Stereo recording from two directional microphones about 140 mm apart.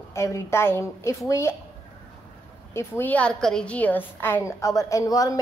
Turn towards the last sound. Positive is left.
turn(degrees=25)  # may be behind; listen again after turning